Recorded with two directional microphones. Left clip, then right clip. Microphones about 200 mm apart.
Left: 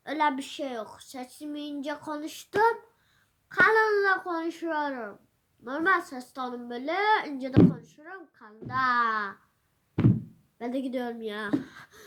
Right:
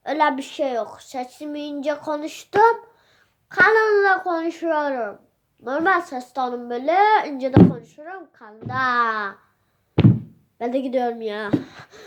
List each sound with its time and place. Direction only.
0.0 s a child's voice: 15° left (ahead or behind)
3.5 s a child's voice: 15° left (ahead or behind)
10.6 s a child's voice: 20° left (ahead or behind)